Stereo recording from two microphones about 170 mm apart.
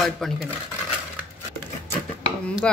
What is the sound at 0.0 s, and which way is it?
Speech, centre (ahead or behind).